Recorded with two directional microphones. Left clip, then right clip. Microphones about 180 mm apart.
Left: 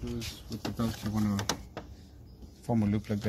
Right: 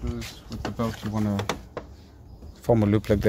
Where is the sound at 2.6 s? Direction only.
55° right (ahead or behind).